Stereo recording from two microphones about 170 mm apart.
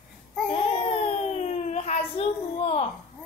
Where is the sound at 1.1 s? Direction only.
40° left (ahead or behind).